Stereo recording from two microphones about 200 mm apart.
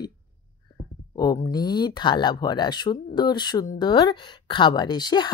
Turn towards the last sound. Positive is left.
turn(degrees=20)  # may be behind; listen again after turning